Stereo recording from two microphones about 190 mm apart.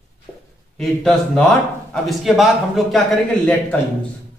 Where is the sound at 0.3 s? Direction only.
5° left (ahead or behind).